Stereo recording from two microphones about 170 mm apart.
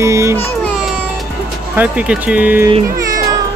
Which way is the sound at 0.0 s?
15° right (ahead or behind).